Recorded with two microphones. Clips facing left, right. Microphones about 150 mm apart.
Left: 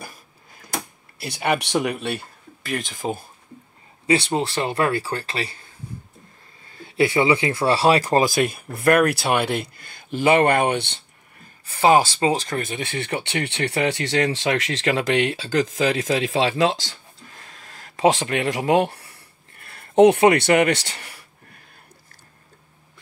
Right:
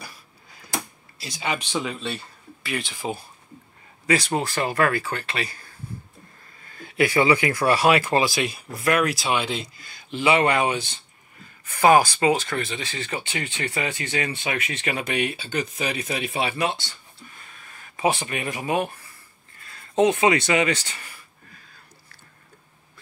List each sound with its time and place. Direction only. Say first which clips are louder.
1.1 s a man's voice: left 6 dB; 60° left (ahead or behind)
4.1 s speech: left 2 dB; 30° left (ahead or behind); by 11.0 s 65° left (ahead or behind)
11.6 s speech: even; 30° left (ahead or behind); by 21.5 s 70° left (ahead or behind)